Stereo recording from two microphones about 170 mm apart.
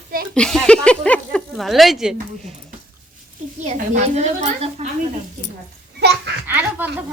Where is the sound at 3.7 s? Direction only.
40° right (ahead or behind).